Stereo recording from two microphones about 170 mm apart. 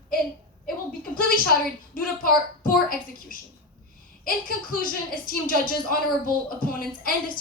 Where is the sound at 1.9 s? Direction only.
55° left (ahead or behind).